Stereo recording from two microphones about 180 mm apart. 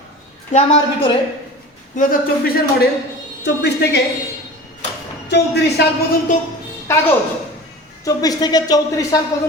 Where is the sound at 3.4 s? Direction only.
70° left (ahead or behind).